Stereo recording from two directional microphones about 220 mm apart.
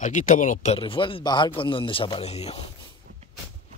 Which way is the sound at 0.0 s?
35° left (ahead or behind).